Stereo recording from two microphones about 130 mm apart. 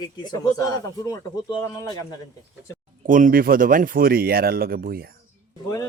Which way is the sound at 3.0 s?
90° right.